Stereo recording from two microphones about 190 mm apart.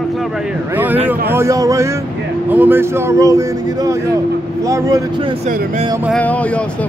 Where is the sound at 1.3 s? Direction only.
15° right (ahead or behind).